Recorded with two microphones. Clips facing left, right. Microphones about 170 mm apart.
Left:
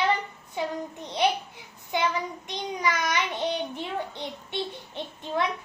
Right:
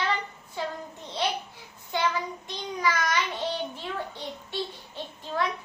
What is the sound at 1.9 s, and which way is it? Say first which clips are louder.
A child's voice: left 1 dB; 15° left (ahead or behind).